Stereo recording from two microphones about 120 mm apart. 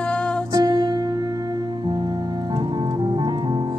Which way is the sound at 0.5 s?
35° right (ahead or behind).